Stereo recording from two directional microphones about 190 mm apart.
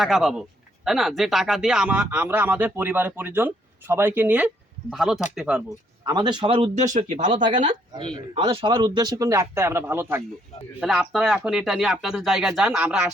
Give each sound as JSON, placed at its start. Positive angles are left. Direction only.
{"t": 0.0, "sound": "speech", "side_deg": 0}
{"t": 6.1, "sound": "speech", "side_deg": -25}
{"t": 7.7, "sound": "speech", "side_deg": -25}